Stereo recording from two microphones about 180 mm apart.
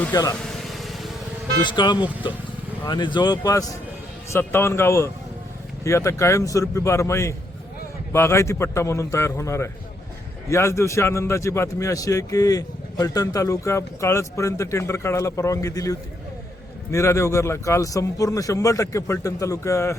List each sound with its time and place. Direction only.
0.1 s speech: 20° left (ahead or behind)
0.6 s vehicle: centre (ahead or behind)
1.6 s a man's voice: 25° left (ahead or behind)